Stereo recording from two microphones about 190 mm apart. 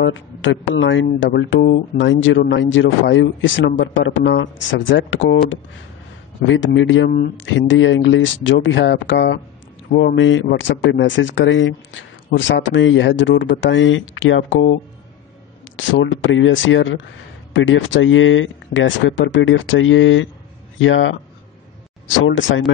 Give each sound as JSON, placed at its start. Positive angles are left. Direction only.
{"t": 0.0, "sound": "speech", "side_deg": 80}
{"t": 17.5, "sound": "speech", "side_deg": 75}